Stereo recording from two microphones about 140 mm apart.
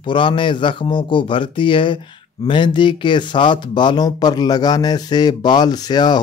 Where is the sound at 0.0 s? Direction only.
35° left (ahead or behind).